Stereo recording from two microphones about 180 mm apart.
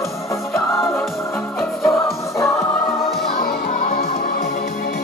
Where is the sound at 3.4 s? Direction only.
50° left (ahead or behind).